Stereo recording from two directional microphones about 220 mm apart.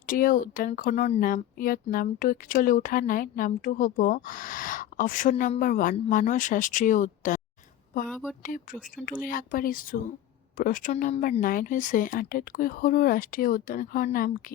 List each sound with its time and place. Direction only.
0.1 s speech: 40° left (ahead or behind)
8.0 s speech: 5° left (ahead or behind)
8.4 s speech: 35° left (ahead or behind)